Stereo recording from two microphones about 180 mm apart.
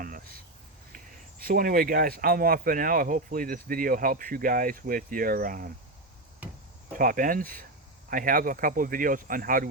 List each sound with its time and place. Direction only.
0.0 s a sound: 55° right (ahead or behind)
1.5 s speech: 50° right (ahead or behind)
6.9 s speech: 50° right (ahead or behind)